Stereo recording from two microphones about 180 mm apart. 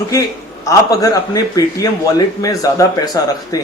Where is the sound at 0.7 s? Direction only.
20° left (ahead or behind).